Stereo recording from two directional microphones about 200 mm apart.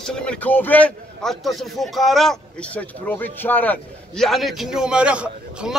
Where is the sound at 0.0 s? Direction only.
5° left (ahead or behind).